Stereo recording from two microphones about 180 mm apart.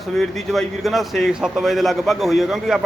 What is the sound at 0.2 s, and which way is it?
A man's voice, centre (ahead or behind).